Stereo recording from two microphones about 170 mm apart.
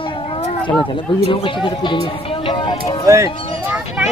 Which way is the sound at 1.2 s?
30° left (ahead or behind).